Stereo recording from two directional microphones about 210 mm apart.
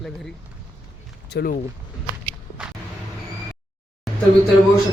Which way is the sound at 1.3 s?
45° left (ahead or behind).